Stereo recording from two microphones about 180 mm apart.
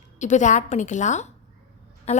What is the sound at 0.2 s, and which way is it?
A woman's voice, 40° left (ahead or behind).